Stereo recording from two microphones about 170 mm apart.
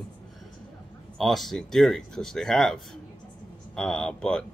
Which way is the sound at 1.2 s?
Centre (ahead or behind).